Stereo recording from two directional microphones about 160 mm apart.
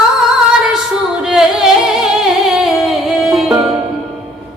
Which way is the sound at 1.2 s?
5° right (ahead or behind).